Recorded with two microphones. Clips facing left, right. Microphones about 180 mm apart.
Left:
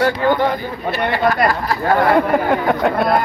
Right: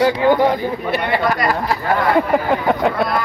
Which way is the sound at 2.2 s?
Centre (ahead or behind).